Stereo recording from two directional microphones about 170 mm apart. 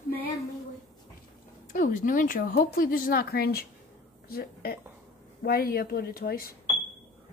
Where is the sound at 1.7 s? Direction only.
50° left (ahead or behind).